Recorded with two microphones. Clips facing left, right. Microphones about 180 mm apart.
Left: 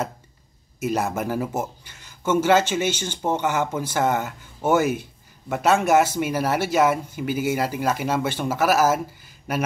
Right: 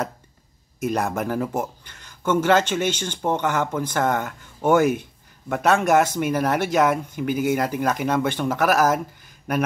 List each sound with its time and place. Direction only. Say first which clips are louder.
0.7 s speech: even; 5° left (ahead or behind)